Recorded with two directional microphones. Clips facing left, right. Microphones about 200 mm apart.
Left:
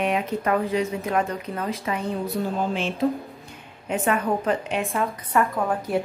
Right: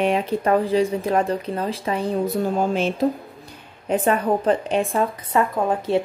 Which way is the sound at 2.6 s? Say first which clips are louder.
Right 3 dB; 40° right (ahead or behind).